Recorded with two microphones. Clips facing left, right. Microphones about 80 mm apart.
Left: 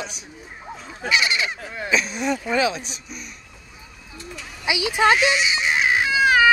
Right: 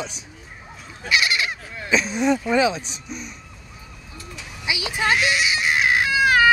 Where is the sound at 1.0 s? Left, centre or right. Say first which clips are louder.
Even; centre.